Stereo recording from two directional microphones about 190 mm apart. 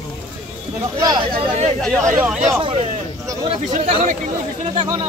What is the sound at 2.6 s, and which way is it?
Speech, 30° right (ahead or behind).